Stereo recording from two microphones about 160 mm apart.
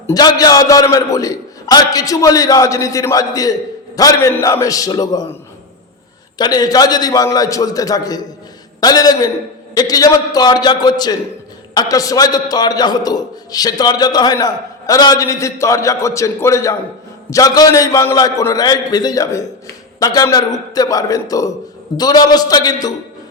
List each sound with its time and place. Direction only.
0.1 s a man's voice: 25° left (ahead or behind)
6.4 s a man's voice: 25° left (ahead or behind)